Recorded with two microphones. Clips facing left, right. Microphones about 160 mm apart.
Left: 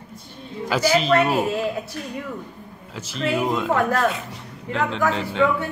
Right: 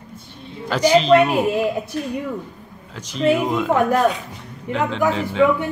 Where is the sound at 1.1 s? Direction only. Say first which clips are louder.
Right 4 dB; 15° right (ahead or behind).